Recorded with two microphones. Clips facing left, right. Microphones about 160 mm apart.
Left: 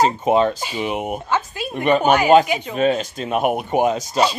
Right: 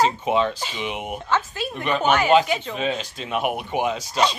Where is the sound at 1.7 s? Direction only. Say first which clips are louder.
Left 6 dB; 50° left (ahead or behind).